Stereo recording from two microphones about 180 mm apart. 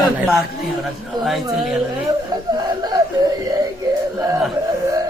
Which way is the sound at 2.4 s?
20° right (ahead or behind).